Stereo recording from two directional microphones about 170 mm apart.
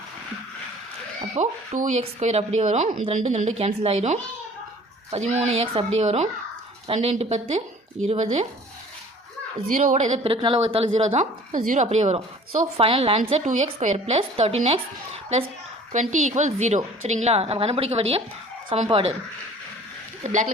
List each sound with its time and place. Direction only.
1.4 s speech: 45° right (ahead or behind)
9.7 s speech: 45° right (ahead or behind)
20.2 s speech: 45° right (ahead or behind)